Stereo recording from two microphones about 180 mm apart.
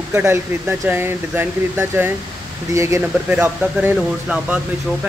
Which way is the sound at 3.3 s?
5° right (ahead or behind).